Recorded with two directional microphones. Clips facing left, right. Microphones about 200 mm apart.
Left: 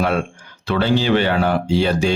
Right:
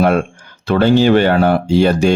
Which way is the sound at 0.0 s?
50° right (ahead or behind).